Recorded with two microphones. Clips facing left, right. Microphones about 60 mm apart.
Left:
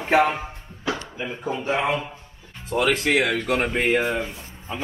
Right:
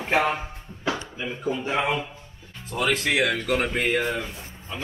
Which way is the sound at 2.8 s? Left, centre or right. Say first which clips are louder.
Left 2 dB; left.